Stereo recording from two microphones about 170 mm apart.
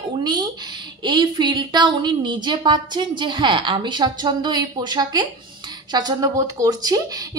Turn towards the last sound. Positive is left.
turn(degrees=-20)  # may be behind; listen again after turning